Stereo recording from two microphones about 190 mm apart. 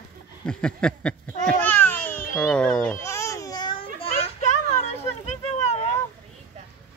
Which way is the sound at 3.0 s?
15° left (ahead or behind).